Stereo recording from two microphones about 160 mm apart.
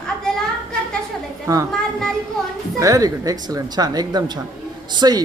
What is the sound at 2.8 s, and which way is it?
Speech, 20° right (ahead or behind).